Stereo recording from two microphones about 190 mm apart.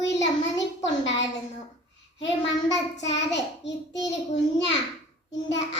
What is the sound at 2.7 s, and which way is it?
Child singing, 70° left (ahead or behind).